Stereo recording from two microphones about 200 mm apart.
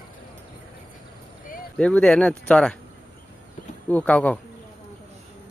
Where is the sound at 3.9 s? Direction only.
5° left (ahead or behind).